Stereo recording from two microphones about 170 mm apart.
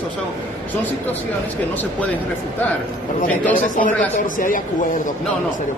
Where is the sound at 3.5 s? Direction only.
55° left (ahead or behind).